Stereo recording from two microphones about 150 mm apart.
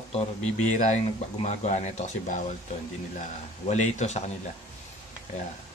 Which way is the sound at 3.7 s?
50° left (ahead or behind).